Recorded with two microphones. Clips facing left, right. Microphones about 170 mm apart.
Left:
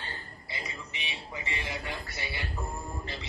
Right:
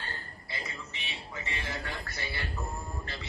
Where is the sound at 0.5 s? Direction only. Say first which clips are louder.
Even; 15° left (ahead or behind).